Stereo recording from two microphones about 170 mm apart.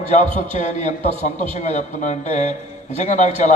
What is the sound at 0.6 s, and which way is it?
A man's voice, 40° left (ahead or behind).